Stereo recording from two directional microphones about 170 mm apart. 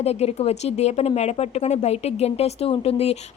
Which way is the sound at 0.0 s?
40° left (ahead or behind).